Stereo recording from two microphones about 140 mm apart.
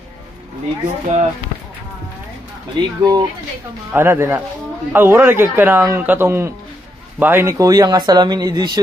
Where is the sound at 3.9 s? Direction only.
15° right (ahead or behind).